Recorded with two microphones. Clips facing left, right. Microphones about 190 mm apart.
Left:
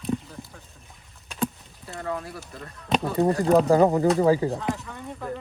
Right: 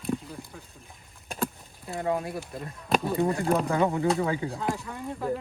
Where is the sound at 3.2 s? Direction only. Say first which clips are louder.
Left 6 dB; 35° left (ahead or behind).